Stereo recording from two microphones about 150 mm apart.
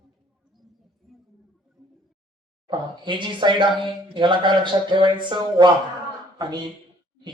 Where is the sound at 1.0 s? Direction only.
Centre (ahead or behind).